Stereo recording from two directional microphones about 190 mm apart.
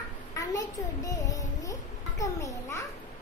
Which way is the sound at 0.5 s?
15° left (ahead or behind).